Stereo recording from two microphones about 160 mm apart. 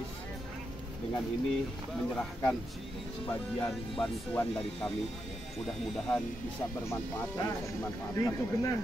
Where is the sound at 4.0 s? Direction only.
5° left (ahead or behind).